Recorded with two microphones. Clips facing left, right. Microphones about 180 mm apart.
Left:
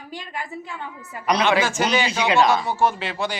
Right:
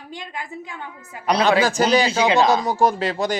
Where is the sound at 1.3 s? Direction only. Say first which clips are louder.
Right 2 dB; 30° right (ahead or behind).